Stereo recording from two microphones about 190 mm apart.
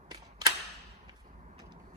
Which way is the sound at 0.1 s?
20° right (ahead or behind).